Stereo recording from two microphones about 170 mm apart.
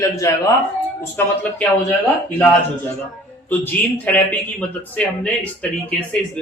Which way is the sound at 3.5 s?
10° left (ahead or behind).